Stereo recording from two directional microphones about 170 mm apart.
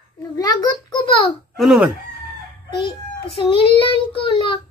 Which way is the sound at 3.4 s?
30° left (ahead or behind).